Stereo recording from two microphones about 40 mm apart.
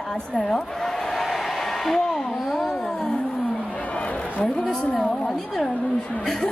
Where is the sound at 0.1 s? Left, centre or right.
Centre.